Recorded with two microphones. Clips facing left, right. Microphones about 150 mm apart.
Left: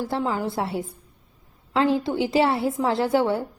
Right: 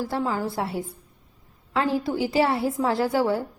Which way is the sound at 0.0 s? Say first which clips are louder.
Left 1 dB; 20° left (ahead or behind).